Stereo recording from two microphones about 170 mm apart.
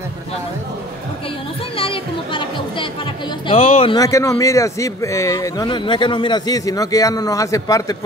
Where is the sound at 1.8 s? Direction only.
30° left (ahead or behind).